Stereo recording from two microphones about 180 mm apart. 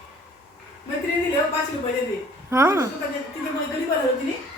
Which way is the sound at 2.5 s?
15° right (ahead or behind).